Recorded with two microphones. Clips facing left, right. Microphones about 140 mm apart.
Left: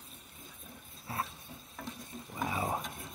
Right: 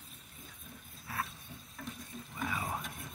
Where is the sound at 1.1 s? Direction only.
25° left (ahead or behind).